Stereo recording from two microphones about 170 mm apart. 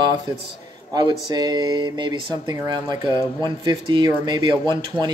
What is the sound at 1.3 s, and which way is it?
Speech, 25° right (ahead or behind).